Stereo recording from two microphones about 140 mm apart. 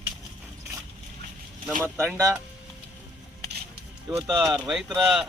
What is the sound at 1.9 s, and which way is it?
Speech, 15° right (ahead or behind).